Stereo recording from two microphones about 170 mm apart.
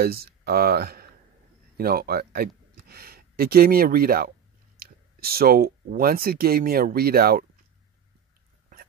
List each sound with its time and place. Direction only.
0.0 s speech: 65° right (ahead or behind)